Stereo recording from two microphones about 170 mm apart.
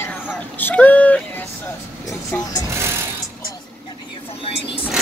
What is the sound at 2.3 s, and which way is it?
Speech, 10° left (ahead or behind).